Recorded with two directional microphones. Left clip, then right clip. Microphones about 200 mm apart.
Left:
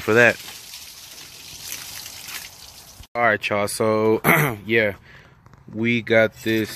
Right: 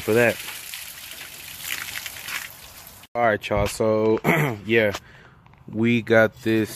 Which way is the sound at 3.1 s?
15° right (ahead or behind).